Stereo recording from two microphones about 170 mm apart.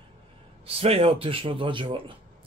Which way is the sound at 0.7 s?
35° right (ahead or behind).